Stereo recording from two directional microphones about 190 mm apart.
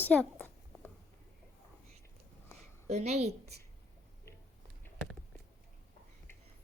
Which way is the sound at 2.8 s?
35° right (ahead or behind).